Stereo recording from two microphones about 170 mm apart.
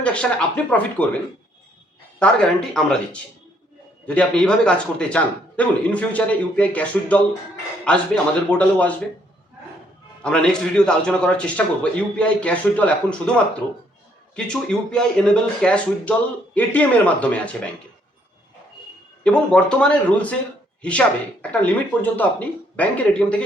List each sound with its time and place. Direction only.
0.0 s a man's voice: 5° left (ahead or behind)
10.2 s a man's voice: 5° left (ahead or behind)
14.3 s a man's voice: 5° left (ahead or behind)
19.2 s a man's voice: 5° left (ahead or behind)
21.5 s a man's voice: 10° left (ahead or behind)